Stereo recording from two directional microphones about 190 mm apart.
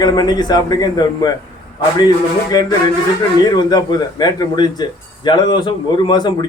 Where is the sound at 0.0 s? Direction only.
20° left (ahead or behind).